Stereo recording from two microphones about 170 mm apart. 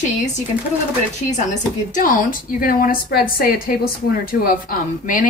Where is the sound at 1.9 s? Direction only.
55° left (ahead or behind).